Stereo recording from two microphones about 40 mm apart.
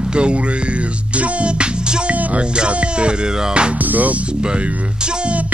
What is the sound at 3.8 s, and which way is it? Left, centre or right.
Speech, right.